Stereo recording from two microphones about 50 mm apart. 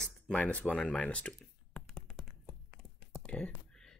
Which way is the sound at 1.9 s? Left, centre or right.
Centre.